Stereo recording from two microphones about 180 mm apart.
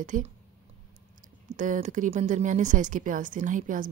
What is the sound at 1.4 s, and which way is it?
A woman's voice, 45° right (ahead or behind).